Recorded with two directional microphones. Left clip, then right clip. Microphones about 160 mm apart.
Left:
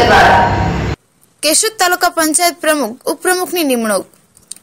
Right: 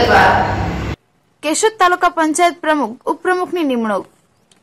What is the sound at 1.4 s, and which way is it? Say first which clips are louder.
Speech: even; 25° left (ahead or behind).